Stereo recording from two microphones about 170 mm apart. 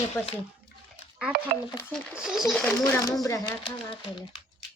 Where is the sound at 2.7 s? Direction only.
20° left (ahead or behind).